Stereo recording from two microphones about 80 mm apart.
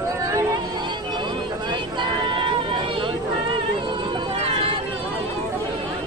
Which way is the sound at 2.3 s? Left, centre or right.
Right.